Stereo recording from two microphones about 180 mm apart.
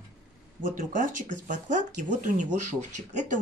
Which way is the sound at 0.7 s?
45° right (ahead or behind).